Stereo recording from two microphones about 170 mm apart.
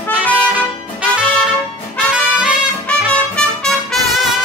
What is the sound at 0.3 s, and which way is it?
Music, 10° right (ahead or behind).